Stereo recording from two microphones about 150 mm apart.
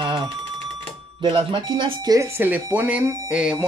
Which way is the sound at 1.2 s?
30° right (ahead or behind).